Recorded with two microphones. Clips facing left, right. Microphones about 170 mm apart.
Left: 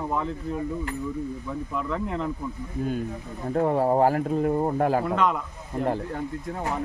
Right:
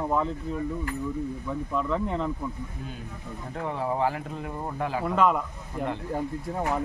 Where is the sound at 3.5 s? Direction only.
45° left (ahead or behind).